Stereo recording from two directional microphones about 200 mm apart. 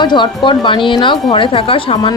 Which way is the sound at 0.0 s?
20° left (ahead or behind).